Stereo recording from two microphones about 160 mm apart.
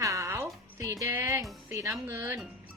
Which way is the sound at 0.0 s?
20° right (ahead or behind).